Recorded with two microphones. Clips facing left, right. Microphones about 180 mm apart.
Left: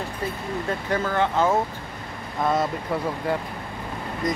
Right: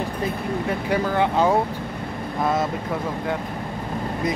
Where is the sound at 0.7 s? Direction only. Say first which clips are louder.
Right 2 dB; 10° right (ahead or behind).